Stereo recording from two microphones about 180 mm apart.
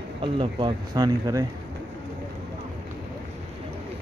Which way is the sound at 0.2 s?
25° right (ahead or behind).